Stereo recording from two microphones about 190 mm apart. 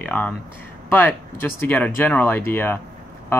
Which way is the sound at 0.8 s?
10° left (ahead or behind).